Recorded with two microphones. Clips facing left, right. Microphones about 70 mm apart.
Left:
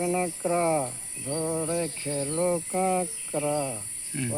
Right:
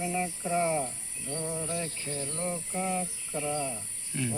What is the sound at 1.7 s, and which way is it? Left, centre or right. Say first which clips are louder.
Speech: left 6 dB; left.